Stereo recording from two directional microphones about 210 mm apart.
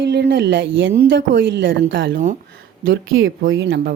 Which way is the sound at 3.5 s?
55° right (ahead or behind).